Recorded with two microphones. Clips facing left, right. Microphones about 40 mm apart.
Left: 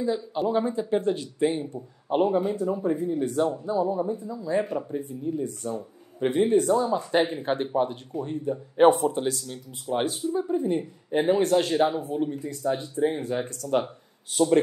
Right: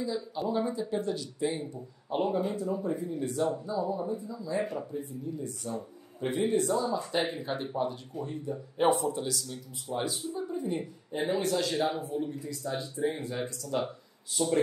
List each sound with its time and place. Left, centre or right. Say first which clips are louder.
0.0 s speech: left 6 dB; left
4.0 s speech: left 5 dB; left
4.9 s speech: left 7 dB; left